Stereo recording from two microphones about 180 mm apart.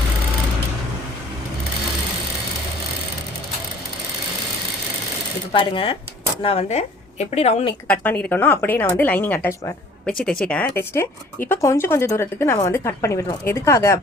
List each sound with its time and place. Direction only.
5.5 s speech: 30° left (ahead or behind)
7.9 s speech: 10° left (ahead or behind)